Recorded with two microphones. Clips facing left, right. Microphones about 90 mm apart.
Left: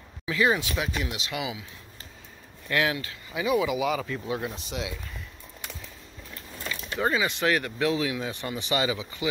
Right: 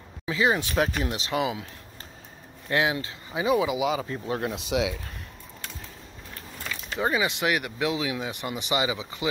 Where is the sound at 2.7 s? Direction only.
25° right (ahead or behind).